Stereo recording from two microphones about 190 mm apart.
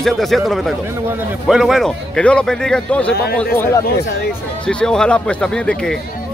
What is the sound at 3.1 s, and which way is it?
Speech, 55° left (ahead or behind).